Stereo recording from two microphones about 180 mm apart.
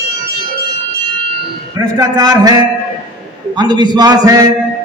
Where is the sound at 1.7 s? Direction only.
20° right (ahead or behind).